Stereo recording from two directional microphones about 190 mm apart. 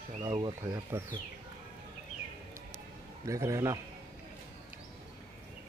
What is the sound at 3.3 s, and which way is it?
Speech, 15° right (ahead or behind).